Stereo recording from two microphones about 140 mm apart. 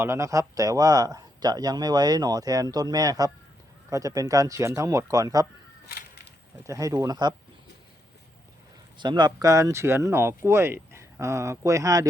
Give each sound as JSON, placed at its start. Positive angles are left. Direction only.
{"t": 0.0, "sound": "speech", "side_deg": -20}
{"t": 6.7, "sound": "speech", "side_deg": -25}
{"t": 9.0, "sound": "speech", "side_deg": -30}